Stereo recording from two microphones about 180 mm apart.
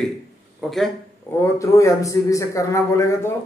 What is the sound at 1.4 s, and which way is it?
A man's voice, 15° left (ahead or behind).